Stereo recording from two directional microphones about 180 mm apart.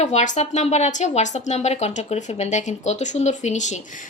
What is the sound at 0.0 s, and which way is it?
Speech, 40° left (ahead or behind).